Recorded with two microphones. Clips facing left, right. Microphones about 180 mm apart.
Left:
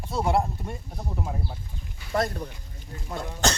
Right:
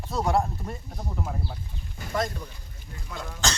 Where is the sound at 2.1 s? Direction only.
40° left (ahead or behind).